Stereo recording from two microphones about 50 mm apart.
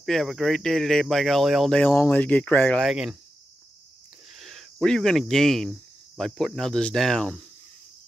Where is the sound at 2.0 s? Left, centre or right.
Left.